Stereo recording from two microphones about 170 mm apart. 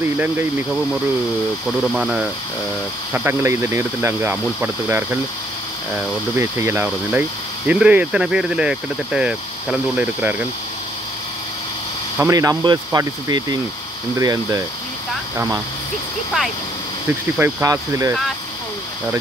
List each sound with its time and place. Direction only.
1.9 s speech: 5° right (ahead or behind)
3.1 s speech: 15° right (ahead or behind)
6.3 s speech: 15° right (ahead or behind)
12.2 s speech: 20° right (ahead or behind)
17.4 s speech: 15° right (ahead or behind)